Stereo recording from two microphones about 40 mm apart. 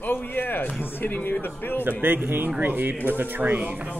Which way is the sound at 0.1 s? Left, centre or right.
Left.